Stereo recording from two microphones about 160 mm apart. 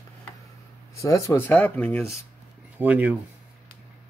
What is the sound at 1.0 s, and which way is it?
Speech, 20° left (ahead or behind).